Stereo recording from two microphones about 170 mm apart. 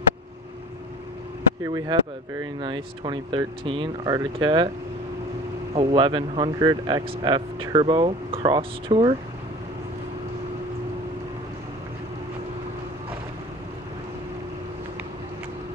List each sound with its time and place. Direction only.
1.6 s speech: 20° right (ahead or behind)
5.8 s speech: 30° right (ahead or behind)